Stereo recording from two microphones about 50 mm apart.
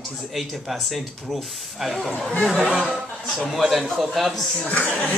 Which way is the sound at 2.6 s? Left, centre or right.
Centre.